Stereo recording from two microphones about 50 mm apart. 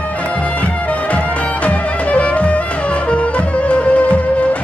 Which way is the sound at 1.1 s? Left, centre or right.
Left.